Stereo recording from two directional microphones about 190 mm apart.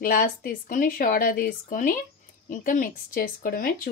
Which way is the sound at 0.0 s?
50° left (ahead or behind).